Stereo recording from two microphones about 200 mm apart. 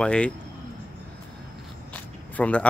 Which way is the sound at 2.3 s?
5° left (ahead or behind).